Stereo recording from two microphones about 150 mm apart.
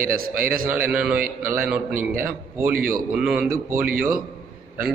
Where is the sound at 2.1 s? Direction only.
65° right (ahead or behind).